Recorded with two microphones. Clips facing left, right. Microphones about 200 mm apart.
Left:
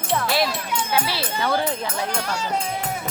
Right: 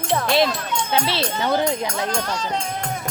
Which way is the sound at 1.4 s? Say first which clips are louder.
Right 2 dB; 20° right (ahead or behind).